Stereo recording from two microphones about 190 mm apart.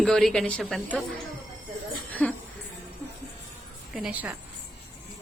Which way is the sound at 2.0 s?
10° left (ahead or behind).